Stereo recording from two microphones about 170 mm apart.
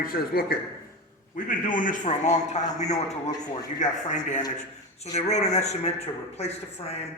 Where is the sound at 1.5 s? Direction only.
50° left (ahead or behind).